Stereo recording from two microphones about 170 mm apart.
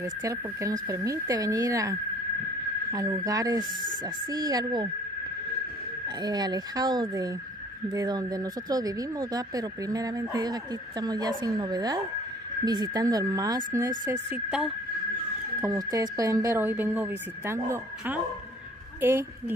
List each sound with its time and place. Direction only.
0.0 s speech: 20° right (ahead or behind)
6.0 s a woman's voice: 25° right (ahead or behind); by 14.7 s 5° right (ahead or behind)
15.6 s a woman's voice: 20° right (ahead or behind)